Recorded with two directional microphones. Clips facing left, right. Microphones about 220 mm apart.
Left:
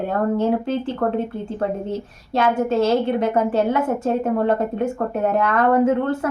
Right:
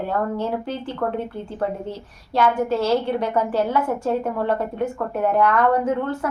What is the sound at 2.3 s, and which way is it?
A woman's voice, 20° left (ahead or behind).